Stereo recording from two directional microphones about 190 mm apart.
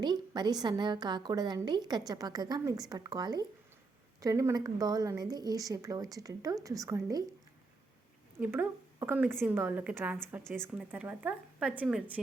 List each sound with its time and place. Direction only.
0.0 s speech: 20° right (ahead or behind)
8.4 s a woman's voice: 10° right (ahead or behind)